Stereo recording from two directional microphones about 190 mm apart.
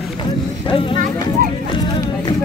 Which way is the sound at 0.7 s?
25° left (ahead or behind).